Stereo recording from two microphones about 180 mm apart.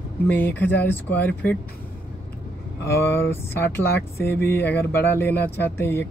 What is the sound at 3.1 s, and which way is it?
Speech, 15° left (ahead or behind).